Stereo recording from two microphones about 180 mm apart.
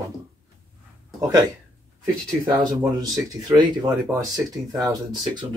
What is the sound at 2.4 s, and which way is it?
Speech, 25° right (ahead or behind).